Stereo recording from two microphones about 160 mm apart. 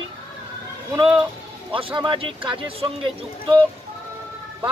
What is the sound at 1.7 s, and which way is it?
Speech, 30° right (ahead or behind).